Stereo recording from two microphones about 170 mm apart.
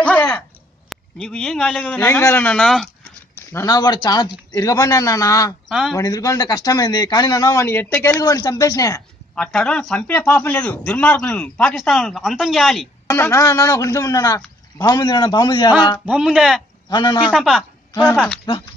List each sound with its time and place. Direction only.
0.8 s a man's voice: 5° left (ahead or behind)
3.5 s speech: 20° left (ahead or behind)
5.7 s a man's voice: centre (ahead or behind)
5.9 s speech: 20° left (ahead or behind)
9.3 s speech: 5° left (ahead or behind)
13.1 s speech: 15° left (ahead or behind)
16.1 s a man's voice: 5° right (ahead or behind)
16.9 s speech: 25° left (ahead or behind)
17.3 s a man's voice: centre (ahead or behind)